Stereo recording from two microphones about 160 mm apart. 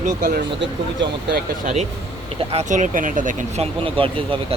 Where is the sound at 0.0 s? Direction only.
55° right (ahead or behind).